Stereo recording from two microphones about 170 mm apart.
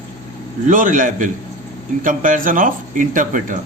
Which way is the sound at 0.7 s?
50° right (ahead or behind).